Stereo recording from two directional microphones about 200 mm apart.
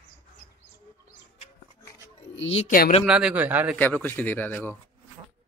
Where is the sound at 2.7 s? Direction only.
45° left (ahead or behind).